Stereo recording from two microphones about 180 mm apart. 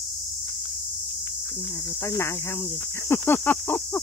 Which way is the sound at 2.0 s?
15° left (ahead or behind).